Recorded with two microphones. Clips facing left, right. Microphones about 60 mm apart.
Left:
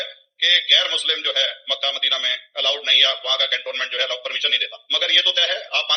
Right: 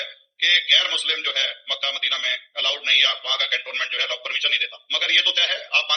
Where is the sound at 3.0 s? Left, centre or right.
Left.